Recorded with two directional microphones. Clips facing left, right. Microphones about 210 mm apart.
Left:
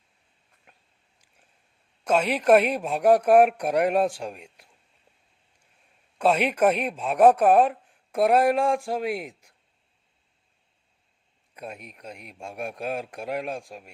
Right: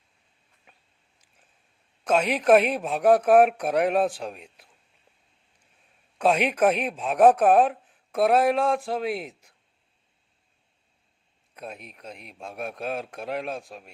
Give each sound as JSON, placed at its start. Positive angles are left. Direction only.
{"t": 2.4, "sound": "speech", "side_deg": 0}
{"t": 2.9, "sound": "a man's voice", "side_deg": 10}
{"t": 6.1, "sound": "speech", "side_deg": 5}
{"t": 6.5, "sound": "speech", "side_deg": -5}
{"t": 6.7, "sound": "a man's voice", "side_deg": 5}
{"t": 7.6, "sound": "a sound", "side_deg": -5}
{"t": 8.1, "sound": "a man's voice", "side_deg": 10}
{"t": 8.8, "sound": "speech", "side_deg": 0}
{"t": 9.0, "sound": "a man's voice", "side_deg": 10}
{"t": 11.5, "sound": "a man's voice", "side_deg": 5}
{"t": 12.5, "sound": "a man's voice", "side_deg": 10}